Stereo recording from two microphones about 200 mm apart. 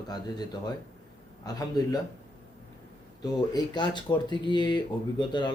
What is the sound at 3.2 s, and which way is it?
Speech, 20° left (ahead or behind).